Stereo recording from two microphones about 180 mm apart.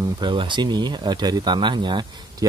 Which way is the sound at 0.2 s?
25° right (ahead or behind).